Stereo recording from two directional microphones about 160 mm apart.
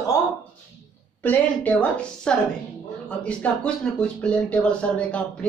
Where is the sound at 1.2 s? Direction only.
10° left (ahead or behind).